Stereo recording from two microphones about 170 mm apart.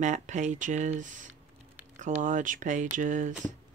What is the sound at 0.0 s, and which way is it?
Speech, 45° right (ahead or behind).